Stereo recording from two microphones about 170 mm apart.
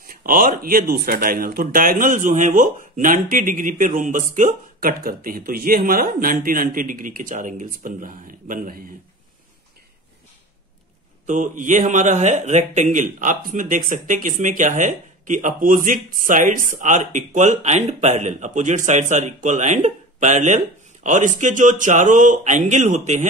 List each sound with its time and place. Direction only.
0.0 s speech: 55° right (ahead or behind)
11.2 s speech: 50° right (ahead or behind)